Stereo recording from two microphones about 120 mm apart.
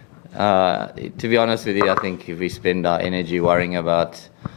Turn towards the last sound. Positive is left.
turn(degrees=20)  # may be behind; listen again after turning